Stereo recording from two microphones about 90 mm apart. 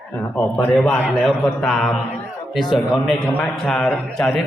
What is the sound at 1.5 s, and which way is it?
A man's voice, 5° left (ahead or behind).